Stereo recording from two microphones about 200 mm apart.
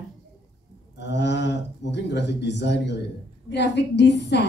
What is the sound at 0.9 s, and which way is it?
A woman's voice, 60° left (ahead or behind).